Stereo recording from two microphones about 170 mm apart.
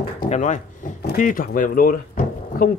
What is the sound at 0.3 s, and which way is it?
Speech, 45° left (ahead or behind).